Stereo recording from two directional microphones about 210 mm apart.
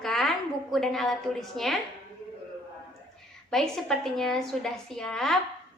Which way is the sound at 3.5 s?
Centre (ahead or behind).